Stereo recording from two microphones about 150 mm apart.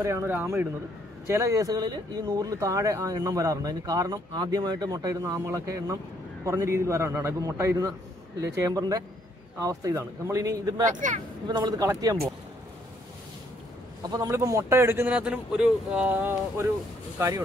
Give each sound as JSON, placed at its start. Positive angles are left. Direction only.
{"t": 0.0, "sound": "a man's voice", "side_deg": -20}
{"t": 10.9, "sound": "speech", "side_deg": -55}
{"t": 11.4, "sound": "speech", "side_deg": -30}
{"t": 14.0, "sound": "a man's voice", "side_deg": -25}